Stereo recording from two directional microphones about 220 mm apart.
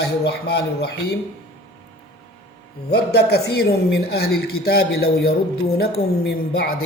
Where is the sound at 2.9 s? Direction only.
45° left (ahead or behind).